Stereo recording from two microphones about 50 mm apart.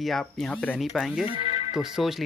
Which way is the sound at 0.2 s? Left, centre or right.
Centre.